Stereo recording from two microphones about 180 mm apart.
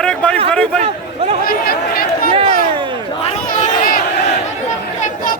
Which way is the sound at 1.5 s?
55° left (ahead or behind).